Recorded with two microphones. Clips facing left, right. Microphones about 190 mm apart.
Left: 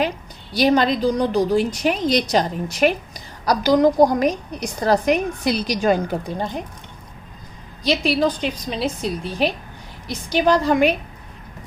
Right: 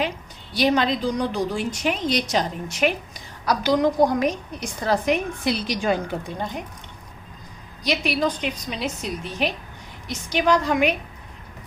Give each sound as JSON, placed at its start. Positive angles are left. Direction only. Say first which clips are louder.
{"t": 0.5, "sound": "a woman's voice", "louder": "left 3 dB", "side_deg": 40}
{"t": 7.9, "sound": "a woman's voice", "louder": "left 4 dB", "side_deg": 30}